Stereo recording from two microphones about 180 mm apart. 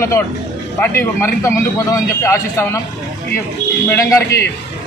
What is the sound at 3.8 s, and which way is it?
Speech, 15° left (ahead or behind).